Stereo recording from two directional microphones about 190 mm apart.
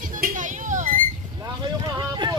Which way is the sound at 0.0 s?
45° right (ahead or behind).